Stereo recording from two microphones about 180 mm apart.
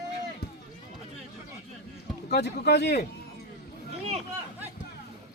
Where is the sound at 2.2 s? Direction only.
60° left (ahead or behind).